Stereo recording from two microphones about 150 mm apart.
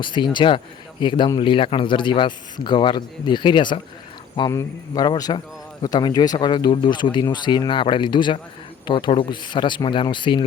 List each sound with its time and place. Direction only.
0.0 s a man's voice: 30° left (ahead or behind)